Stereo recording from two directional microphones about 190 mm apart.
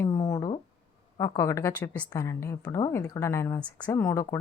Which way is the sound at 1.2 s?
15° left (ahead or behind).